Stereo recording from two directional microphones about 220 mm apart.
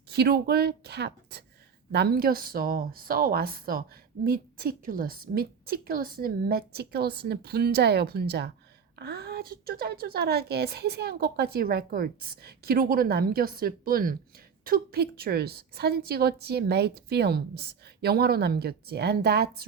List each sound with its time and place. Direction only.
0.1 s a woman's voice: 45° right (ahead or behind)